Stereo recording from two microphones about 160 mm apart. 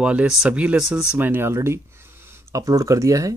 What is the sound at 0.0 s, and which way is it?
Speech, 5° right (ahead or behind).